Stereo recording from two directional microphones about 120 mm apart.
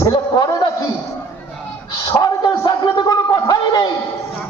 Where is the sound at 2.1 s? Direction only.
30° left (ahead or behind).